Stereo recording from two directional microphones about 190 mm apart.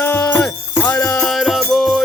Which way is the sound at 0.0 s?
10° left (ahead or behind).